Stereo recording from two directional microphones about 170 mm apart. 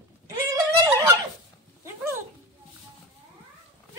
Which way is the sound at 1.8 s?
15° right (ahead or behind).